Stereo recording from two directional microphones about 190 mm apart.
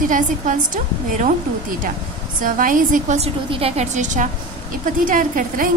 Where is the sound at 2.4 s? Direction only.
45° right (ahead or behind).